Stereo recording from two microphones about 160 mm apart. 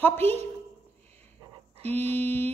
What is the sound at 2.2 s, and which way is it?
Speech, 10° left (ahead or behind).